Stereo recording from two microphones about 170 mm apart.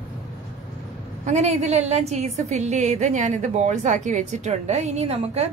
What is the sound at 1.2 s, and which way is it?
A woman's voice, 45° right (ahead or behind).